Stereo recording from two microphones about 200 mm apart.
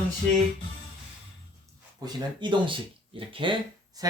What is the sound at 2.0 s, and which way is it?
Speech, 25° right (ahead or behind).